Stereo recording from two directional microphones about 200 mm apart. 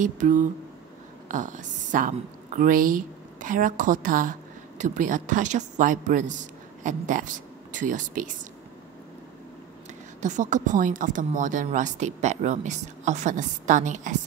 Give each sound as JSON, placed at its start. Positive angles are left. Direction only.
{"t": 0.0, "sound": "a woman's voice", "side_deg": -40}
{"t": 10.2, "sound": "a woman's voice", "side_deg": -35}